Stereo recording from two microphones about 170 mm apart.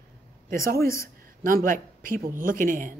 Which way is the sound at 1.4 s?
55° right (ahead or behind).